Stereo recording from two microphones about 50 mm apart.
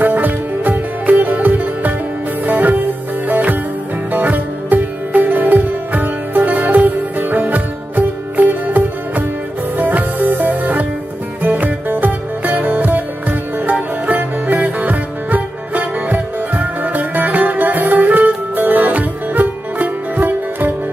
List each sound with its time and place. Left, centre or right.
0.0 s music: right
4.1 s sitar: right
9.8 s music: right